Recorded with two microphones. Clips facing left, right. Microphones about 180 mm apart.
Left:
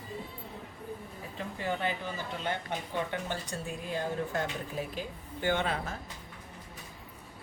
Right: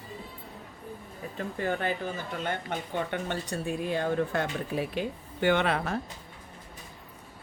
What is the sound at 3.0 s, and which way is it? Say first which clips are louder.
Speech: right 3 dB; 65° right (ahead or behind).